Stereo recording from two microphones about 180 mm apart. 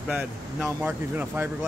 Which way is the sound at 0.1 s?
10° right (ahead or behind).